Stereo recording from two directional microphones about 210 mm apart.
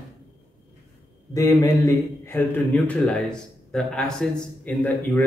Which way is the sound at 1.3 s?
15° left (ahead or behind).